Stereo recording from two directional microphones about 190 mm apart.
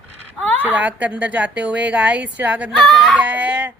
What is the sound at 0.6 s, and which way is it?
A woman's voice, 10° right (ahead or behind).